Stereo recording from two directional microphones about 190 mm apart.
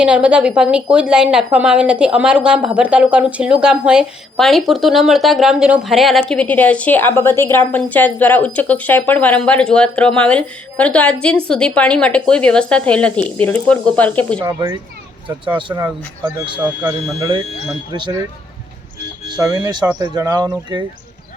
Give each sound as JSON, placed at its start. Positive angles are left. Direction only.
{"t": 0.0, "sound": "a woman's voice", "side_deg": -5}
{"t": 15.7, "sound": "speech", "side_deg": -15}
{"t": 17.9, "sound": "speech", "side_deg": -25}
{"t": 19.3, "sound": "speech", "side_deg": -20}